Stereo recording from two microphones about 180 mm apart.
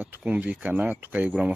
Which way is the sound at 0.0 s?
5° right (ahead or behind).